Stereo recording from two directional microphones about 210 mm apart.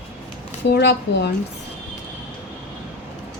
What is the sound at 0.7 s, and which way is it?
Speech, 55° left (ahead or behind).